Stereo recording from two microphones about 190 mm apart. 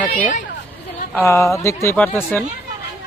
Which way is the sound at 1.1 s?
15° left (ahead or behind).